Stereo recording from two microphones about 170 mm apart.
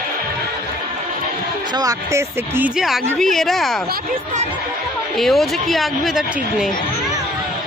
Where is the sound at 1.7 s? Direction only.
20° right (ahead or behind).